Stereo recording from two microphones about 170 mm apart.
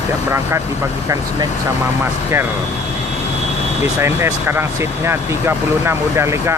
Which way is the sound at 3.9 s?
15° right (ahead or behind).